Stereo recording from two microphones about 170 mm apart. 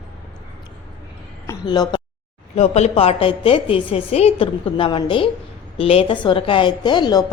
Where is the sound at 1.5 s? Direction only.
25° left (ahead or behind).